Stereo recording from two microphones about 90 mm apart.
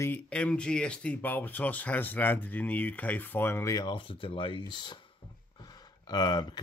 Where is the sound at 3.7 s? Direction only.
65° left (ahead or behind).